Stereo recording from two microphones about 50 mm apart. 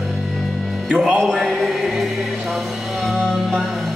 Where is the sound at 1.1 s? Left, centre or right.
Centre.